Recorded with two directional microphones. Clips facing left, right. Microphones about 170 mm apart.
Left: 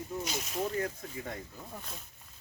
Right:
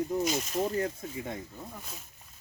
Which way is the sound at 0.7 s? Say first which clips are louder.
Right 3 dB; 25° right (ahead or behind).